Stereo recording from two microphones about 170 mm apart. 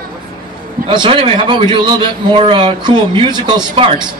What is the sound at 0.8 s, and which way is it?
A man's voice, 30° right (ahead or behind).